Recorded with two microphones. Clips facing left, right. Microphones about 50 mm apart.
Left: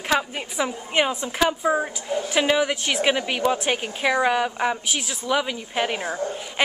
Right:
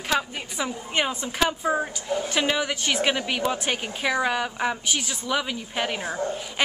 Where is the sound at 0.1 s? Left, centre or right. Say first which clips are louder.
Left 3 dB; centre.